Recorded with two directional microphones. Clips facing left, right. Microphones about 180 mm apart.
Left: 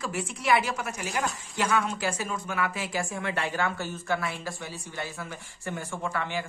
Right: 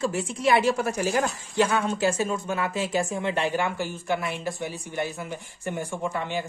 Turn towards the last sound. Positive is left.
turn(degrees=-20)  # may be behind; listen again after turning